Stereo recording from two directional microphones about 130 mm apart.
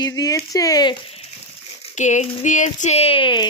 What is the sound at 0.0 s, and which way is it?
Speech, 30° left (ahead or behind).